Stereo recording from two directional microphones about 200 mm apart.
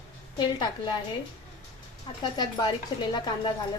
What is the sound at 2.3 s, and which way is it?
Speech, 20° left (ahead or behind).